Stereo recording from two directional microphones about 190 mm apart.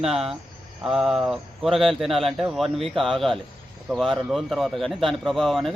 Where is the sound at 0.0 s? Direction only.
Centre (ahead or behind).